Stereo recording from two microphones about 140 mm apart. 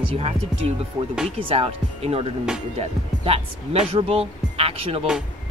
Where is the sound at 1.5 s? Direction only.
45° right (ahead or behind).